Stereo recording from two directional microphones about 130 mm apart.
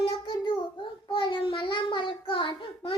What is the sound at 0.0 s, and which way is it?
Child singing, 40° left (ahead or behind).